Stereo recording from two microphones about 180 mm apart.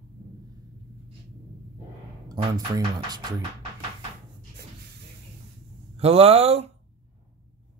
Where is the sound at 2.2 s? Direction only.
20° right (ahead or behind).